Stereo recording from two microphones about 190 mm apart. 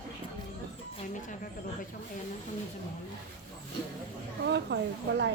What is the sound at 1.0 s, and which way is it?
Speech, 40° left (ahead or behind).